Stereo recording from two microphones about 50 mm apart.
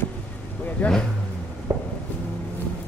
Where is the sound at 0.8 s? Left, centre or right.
Left.